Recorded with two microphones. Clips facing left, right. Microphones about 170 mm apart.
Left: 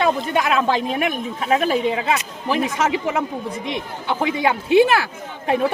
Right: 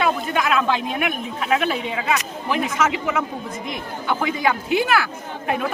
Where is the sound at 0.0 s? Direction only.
35° left (ahead or behind).